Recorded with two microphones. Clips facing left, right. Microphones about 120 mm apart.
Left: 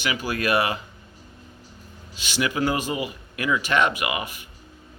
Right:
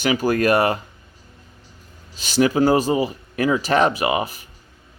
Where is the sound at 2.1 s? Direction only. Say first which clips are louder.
Right 8 dB; 40° right (ahead or behind).